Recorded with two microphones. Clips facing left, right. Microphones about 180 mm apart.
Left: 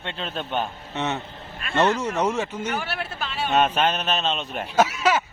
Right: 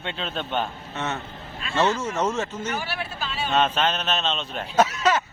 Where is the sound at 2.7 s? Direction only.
55° left (ahead or behind).